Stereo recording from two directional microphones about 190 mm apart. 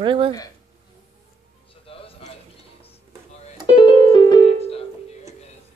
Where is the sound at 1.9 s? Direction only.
30° left (ahead or behind).